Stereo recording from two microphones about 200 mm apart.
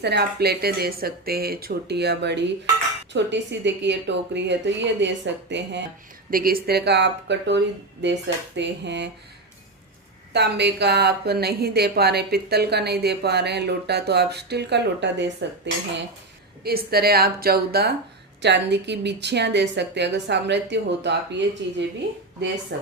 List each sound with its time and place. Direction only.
0.0 s a woman's voice: 55° right (ahead or behind)
6.3 s a woman's voice: 45° right (ahead or behind)
10.3 s a woman's voice: 55° right (ahead or behind)
16.6 s a woman's voice: 50° right (ahead or behind)